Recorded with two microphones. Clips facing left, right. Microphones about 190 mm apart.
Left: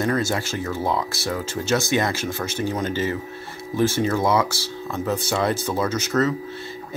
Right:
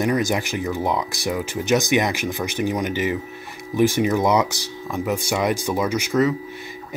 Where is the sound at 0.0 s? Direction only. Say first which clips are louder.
Right 2 dB; 15° right (ahead or behind).